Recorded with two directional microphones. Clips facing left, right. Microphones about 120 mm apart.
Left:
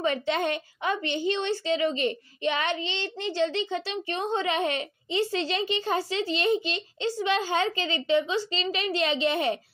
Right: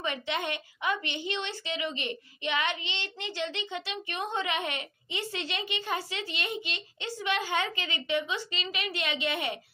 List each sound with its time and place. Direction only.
0.0 s a woman's voice: 35° left (ahead or behind)